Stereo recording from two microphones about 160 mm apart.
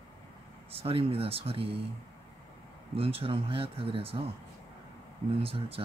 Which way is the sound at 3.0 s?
35° right (ahead or behind).